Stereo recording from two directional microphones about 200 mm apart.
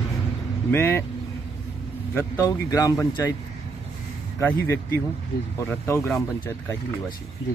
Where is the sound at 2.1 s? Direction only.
15° left (ahead or behind).